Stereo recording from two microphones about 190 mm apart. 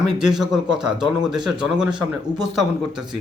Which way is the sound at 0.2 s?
5° right (ahead or behind).